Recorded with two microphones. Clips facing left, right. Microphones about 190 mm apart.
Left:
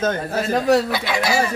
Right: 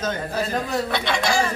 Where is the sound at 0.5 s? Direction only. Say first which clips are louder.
Left 13 dB; 75° left (ahead or behind).